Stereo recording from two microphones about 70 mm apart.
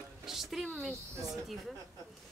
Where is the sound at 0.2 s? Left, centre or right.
Centre.